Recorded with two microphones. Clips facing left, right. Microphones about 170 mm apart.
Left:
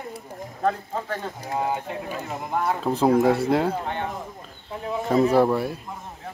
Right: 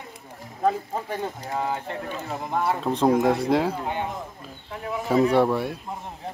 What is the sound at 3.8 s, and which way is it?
Speech, 10° right (ahead or behind).